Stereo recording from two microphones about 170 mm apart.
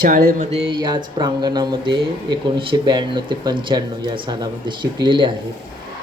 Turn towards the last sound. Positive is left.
turn(degrees=-30)  # may be behind; listen again after turning